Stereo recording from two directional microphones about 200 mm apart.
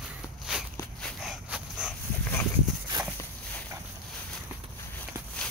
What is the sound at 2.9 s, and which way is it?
Walk, 25° right (ahead or behind).